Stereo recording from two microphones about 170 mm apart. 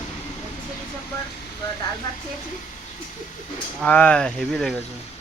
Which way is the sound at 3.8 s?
5° left (ahead or behind).